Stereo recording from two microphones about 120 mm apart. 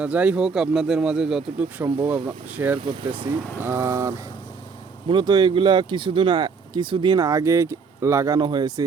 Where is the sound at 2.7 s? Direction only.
40° right (ahead or behind).